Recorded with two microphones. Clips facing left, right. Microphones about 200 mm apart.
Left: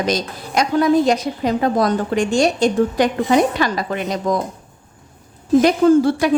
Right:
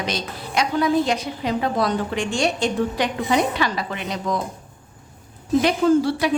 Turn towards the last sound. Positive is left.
turn(degrees=50)  # may be behind; listen again after turning